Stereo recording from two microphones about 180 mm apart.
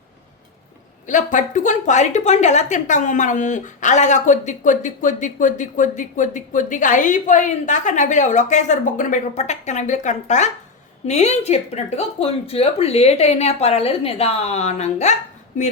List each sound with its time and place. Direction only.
1.0 s a woman's voice: 45° left (ahead or behind)